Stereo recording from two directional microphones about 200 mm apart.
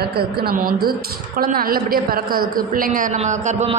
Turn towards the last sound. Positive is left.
turn(degrees=-35)  # may be behind; listen again after turning